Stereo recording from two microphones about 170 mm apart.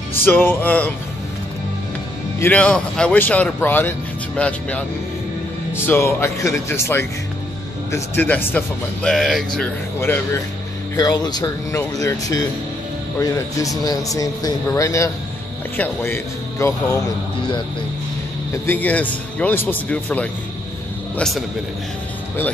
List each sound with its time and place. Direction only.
0.1 s speech: 10° left (ahead or behind)
2.4 s speech: 5° left (ahead or behind)
9.9 s speech: 15° left (ahead or behind)
18.5 s a man's voice: 10° left (ahead or behind)